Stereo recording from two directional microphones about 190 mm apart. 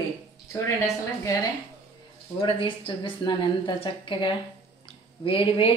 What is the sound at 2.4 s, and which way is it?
A woman's voice, 30° left (ahead or behind).